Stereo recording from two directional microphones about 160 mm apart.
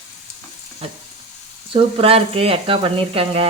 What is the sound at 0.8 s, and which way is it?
Speech, 35° right (ahead or behind).